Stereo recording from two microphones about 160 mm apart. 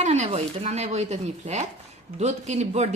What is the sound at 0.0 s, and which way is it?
A woman's voice, 45° right (ahead or behind).